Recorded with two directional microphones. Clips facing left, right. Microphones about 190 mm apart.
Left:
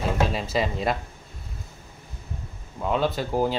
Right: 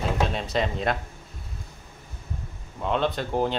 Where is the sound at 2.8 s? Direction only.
5° left (ahead or behind).